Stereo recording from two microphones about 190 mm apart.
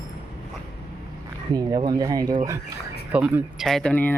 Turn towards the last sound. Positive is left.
turn(degrees=5)  # may be behind; listen again after turning